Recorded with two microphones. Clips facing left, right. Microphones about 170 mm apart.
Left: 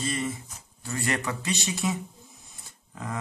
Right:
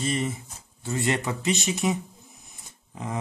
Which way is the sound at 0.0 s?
25° right (ahead or behind).